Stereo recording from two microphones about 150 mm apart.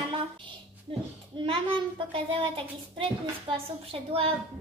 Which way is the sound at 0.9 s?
35° right (ahead or behind).